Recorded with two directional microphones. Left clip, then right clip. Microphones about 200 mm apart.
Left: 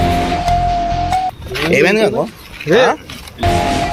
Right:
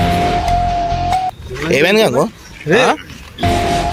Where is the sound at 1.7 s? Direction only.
40° right (ahead or behind).